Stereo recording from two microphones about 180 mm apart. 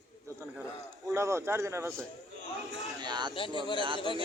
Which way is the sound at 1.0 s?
15° right (ahead or behind).